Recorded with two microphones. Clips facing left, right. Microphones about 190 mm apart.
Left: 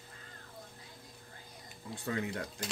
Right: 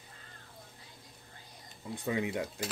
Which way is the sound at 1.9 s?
15° right (ahead or behind).